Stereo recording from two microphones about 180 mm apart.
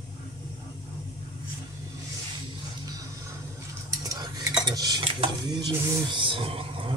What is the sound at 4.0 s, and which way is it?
Stir, 20° right (ahead or behind).